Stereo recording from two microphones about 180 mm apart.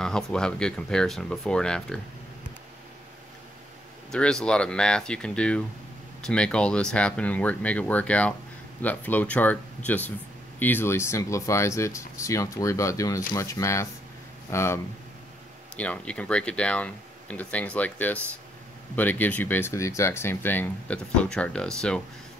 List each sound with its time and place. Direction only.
0.0 s speech: 5° left (ahead or behind)
4.1 s speech: 5° left (ahead or behind)